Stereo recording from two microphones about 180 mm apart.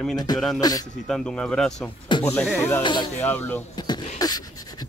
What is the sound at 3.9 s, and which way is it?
Beatboxing, 20° left (ahead or behind).